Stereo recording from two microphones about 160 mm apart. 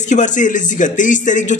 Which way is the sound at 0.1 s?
50° left (ahead or behind).